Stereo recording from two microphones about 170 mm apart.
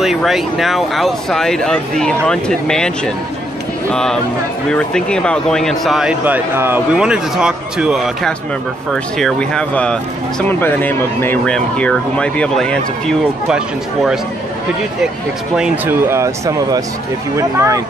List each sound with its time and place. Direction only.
0.0 s a man's voice: centre (ahead or behind)
3.9 s a man's voice: 5° left (ahead or behind)
15.5 s speech: 5° right (ahead or behind)